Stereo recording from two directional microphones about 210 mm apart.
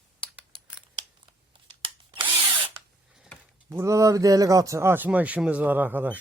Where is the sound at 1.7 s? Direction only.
25° right (ahead or behind).